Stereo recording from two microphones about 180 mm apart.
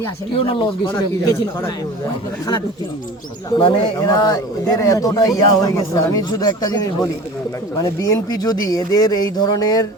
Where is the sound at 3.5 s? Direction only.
25° left (ahead or behind).